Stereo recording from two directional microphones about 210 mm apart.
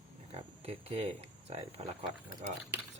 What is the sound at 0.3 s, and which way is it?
Speech, 25° right (ahead or behind).